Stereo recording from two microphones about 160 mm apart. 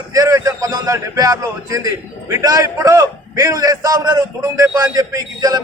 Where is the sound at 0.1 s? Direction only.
20° right (ahead or behind).